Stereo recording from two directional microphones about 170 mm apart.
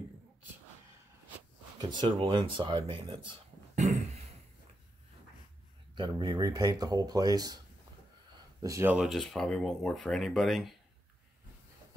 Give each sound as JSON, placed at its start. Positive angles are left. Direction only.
{"t": 1.8, "sound": "speech", "side_deg": -25}
{"t": 3.7, "sound": "a sound", "side_deg": -40}
{"t": 5.9, "sound": "speech", "side_deg": -25}
{"t": 8.9, "sound": "speech", "side_deg": 0}